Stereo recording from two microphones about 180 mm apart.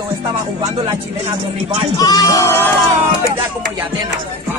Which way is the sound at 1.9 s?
20° left (ahead or behind).